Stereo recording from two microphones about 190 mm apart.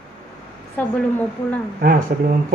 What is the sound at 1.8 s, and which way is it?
Speech, 50° right (ahead or behind).